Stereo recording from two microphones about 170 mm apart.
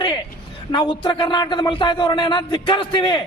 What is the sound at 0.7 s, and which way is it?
Speech, 25° left (ahead or behind).